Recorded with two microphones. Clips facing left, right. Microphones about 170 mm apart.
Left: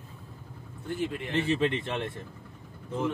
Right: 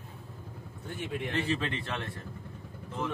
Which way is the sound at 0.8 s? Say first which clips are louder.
Left 4 dB; centre (ahead or behind).